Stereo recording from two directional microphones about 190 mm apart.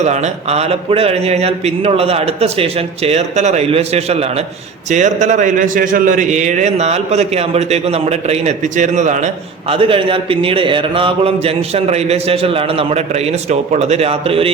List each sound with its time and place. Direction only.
0.0 s a man's voice: 35° right (ahead or behind)